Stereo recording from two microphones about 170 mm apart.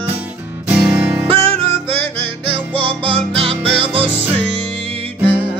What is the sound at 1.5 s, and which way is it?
Music, 35° right (ahead or behind).